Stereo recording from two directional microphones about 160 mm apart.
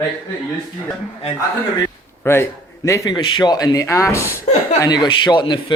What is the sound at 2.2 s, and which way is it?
A man's voice, 15° left (ahead or behind).